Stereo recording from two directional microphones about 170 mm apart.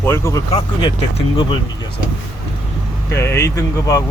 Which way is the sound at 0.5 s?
35° left (ahead or behind).